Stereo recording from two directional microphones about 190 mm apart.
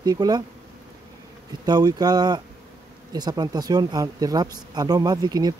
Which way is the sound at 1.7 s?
20° right (ahead or behind).